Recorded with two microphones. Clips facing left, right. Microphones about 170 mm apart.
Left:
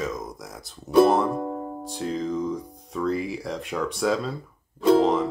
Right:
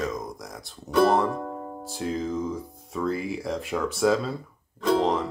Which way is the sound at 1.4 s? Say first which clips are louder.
Left 4 dB; 15° left (ahead or behind).